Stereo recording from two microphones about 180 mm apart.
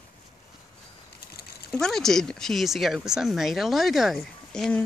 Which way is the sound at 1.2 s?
60° left (ahead or behind).